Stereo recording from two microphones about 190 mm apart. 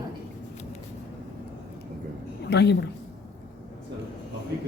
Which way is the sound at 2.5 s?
60° left (ahead or behind).